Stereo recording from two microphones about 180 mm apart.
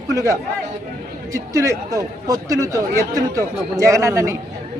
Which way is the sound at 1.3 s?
20° right (ahead or behind).